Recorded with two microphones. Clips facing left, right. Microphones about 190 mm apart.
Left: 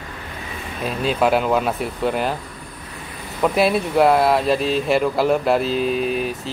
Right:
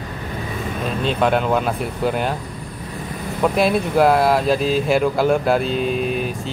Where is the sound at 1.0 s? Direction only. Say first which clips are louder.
Left 1 dB; 5° left (ahead or behind).